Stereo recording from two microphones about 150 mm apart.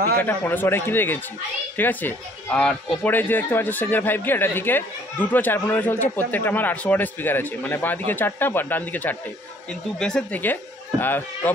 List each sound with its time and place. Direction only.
0.2 s speech: 10° left (ahead or behind)